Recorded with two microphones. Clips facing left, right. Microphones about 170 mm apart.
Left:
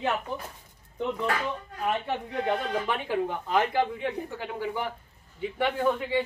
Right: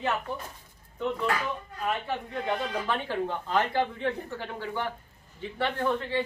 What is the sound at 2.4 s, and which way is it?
Speech, 15° left (ahead or behind).